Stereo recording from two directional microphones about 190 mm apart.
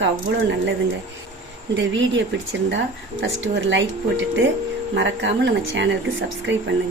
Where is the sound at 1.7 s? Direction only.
75° right (ahead or behind).